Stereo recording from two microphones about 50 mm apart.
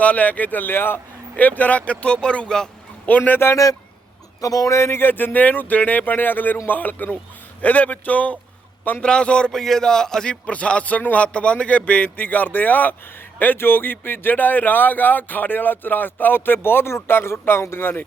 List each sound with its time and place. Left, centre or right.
0.0 s speech: left
1.4 s speech: left; by 2.6 s centre
3.1 s speech: left
4.4 s speech: left
9.0 s speech: left
9.5 s speech: centre
10.4 s speech: left